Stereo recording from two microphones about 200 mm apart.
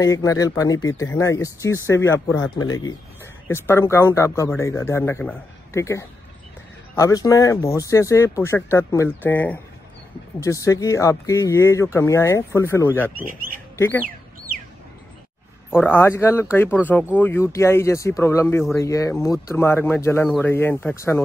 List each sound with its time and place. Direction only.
0.0 s speech: 15° left (ahead or behind)
13.1 s speech: 45° right (ahead or behind)
13.7 s speech: 10° left (ahead or behind)
14.0 s sheep: 45° right (ahead or behind)
15.7 s speech: 10° left (ahead or behind)